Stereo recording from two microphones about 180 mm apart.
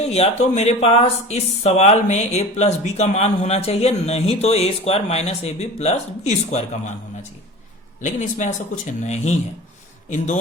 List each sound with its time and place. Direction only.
0.0 s speech: 35° left (ahead or behind)